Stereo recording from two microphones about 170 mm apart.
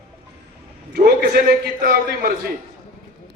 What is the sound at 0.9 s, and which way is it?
A man's voice, 65° right (ahead or behind).